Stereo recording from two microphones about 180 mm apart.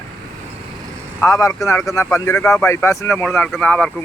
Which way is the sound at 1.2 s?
20° left (ahead or behind).